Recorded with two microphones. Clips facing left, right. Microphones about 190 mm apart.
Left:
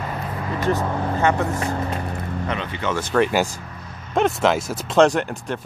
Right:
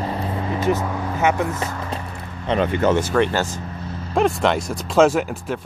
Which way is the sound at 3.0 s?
Centre (ahead or behind).